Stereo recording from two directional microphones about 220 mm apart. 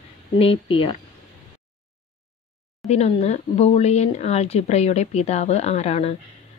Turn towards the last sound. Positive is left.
turn(degrees=30)  # may be behind; listen again after turning